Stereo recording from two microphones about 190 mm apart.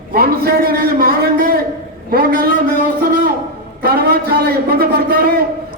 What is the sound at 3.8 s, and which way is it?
A man's voice, 55° right (ahead or behind).